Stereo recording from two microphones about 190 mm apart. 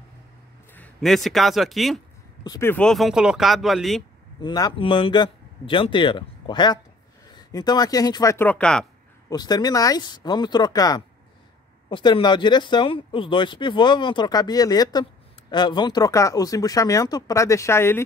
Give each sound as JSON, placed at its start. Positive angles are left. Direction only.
{"t": 0.7, "sound": "a man's voice", "side_deg": 5}
{"t": 2.4, "sound": "speech", "side_deg": 20}
{"t": 2.7, "sound": "speech", "side_deg": 5}
{"t": 4.4, "sound": "speech", "side_deg": 20}
{"t": 9.3, "sound": "speech", "side_deg": 20}